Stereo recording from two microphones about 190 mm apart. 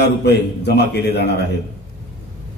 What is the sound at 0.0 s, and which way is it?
A man's voice, 60° left (ahead or behind).